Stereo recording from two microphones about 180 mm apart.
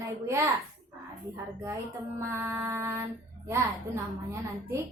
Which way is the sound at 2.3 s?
15° right (ahead or behind).